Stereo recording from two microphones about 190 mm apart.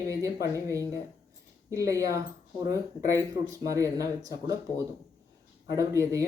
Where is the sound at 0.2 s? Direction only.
15° right (ahead or behind).